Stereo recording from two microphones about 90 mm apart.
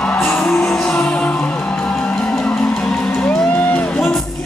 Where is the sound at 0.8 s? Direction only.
10° left (ahead or behind).